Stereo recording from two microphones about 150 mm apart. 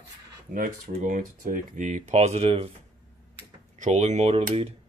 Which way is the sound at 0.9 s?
60° right (ahead or behind).